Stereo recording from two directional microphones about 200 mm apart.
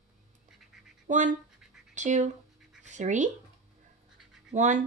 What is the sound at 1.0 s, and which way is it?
Speech, 40° right (ahead or behind).